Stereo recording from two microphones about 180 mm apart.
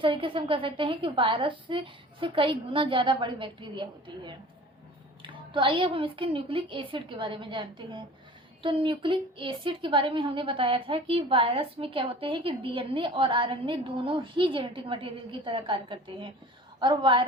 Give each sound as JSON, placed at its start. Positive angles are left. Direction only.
{"t": 0.0, "sound": "a woman's voice", "side_deg": -30}